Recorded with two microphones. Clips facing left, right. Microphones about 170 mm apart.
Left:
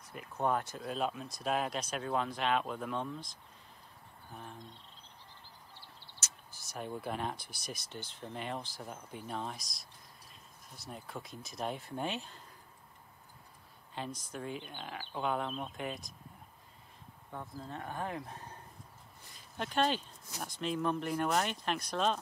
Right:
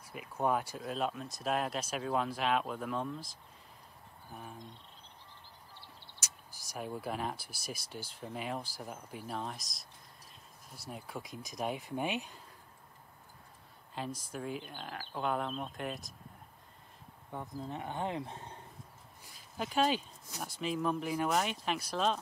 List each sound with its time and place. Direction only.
0.0 s speech: 5° right (ahead or behind)
4.3 s speech: 5° right (ahead or behind)
6.2 s speech: 10° right (ahead or behind)
14.0 s speech: centre (ahead or behind)
17.3 s speech: 15° right (ahead or behind)
19.3 s speech: 5° right (ahead or behind)